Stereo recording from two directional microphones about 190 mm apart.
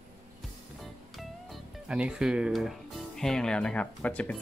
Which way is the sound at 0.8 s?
Centre (ahead or behind).